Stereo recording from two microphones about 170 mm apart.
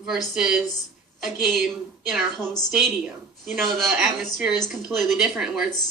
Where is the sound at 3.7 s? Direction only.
Centre (ahead or behind).